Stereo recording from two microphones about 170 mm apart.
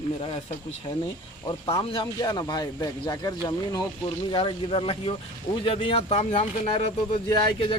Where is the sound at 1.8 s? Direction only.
30° left (ahead or behind).